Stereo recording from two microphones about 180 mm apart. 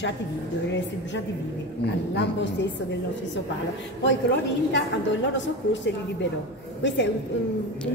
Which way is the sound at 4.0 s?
85° left.